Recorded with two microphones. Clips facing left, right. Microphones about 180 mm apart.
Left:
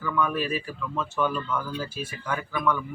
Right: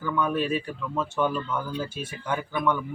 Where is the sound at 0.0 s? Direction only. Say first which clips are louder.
Right 1 dB; 25° right (ahead or behind).